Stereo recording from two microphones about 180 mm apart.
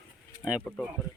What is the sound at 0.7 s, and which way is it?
Speech, 5° left (ahead or behind).